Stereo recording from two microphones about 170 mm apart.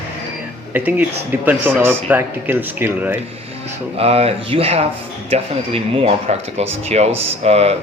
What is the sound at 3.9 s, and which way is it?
Speech, 35° right (ahead or behind).